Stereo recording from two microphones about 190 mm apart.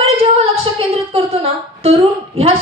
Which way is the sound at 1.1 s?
30° right (ahead or behind).